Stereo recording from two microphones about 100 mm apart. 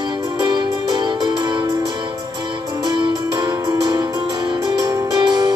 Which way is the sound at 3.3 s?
40° right (ahead or behind).